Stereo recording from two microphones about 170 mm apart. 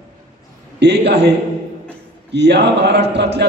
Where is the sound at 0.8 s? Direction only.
80° right.